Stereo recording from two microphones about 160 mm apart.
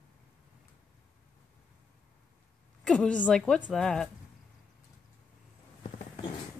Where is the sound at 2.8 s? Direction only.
5° left (ahead or behind).